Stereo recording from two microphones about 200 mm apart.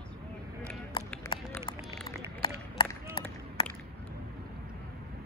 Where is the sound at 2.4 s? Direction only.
25° left (ahead or behind).